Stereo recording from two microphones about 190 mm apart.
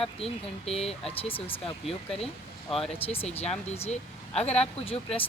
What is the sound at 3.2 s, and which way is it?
A woman's voice, 35° left (ahead or behind).